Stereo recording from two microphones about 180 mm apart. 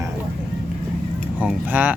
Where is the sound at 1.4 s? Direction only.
10° right (ahead or behind).